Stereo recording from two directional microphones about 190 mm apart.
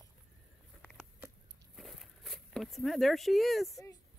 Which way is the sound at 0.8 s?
5° left (ahead or behind).